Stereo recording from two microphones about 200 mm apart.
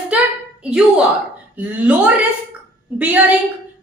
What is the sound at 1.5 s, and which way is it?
A woman's voice, 10° right (ahead or behind).